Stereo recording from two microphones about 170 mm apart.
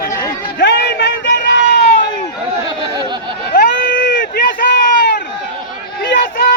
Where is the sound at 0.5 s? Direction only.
70° left (ahead or behind); by 1.8 s 90° left.